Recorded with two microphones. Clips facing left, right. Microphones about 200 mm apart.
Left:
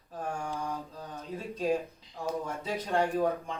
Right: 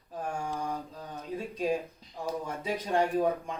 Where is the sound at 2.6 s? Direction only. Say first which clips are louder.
Right 2 dB; 15° right (ahead or behind).